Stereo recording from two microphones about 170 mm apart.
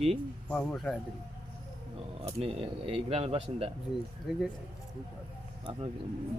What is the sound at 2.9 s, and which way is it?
Speech, 35° right (ahead or behind).